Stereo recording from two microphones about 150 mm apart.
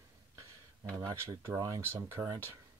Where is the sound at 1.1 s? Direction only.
20° right (ahead or behind).